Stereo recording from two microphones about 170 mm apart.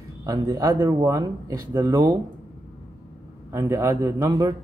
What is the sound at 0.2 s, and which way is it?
Speech, 20° right (ahead or behind).